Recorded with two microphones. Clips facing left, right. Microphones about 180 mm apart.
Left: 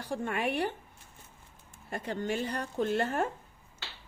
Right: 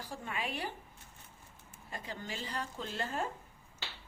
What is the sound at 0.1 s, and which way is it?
Speech, 60° left (ahead or behind).